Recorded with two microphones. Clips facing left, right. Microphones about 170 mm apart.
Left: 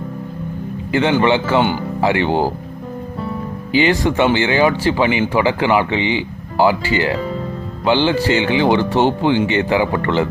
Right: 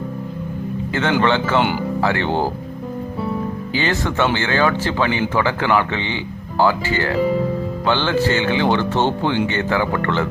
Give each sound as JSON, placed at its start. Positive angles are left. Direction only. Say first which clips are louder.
{"t": 1.2, "sound": "speech", "louder": "left 2 dB", "side_deg": 15}
{"t": 3.7, "sound": "speech", "louder": "left 8 dB", "side_deg": 15}